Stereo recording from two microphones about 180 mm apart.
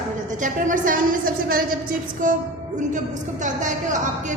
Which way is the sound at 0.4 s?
50° right (ahead or behind).